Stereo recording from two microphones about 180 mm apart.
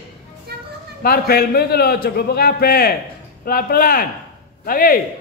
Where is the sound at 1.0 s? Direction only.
60° left (ahead or behind).